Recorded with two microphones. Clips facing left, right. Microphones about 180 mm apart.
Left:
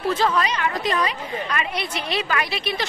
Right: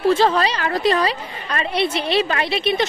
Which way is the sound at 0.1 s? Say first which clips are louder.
Right 1 dB; 30° right (ahead or behind).